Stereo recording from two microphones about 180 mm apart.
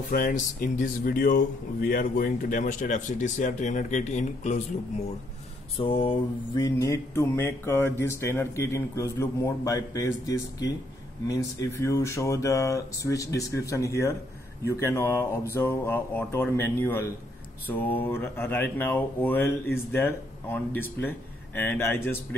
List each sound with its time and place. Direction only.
0.1 s speech: 50° left (ahead or behind)
5.8 s mantra: 30° left (ahead or behind); by 22.2 s 10° left (ahead or behind)